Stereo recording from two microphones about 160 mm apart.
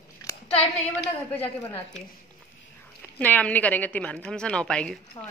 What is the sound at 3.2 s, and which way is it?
A woman's voice, 10° left (ahead or behind).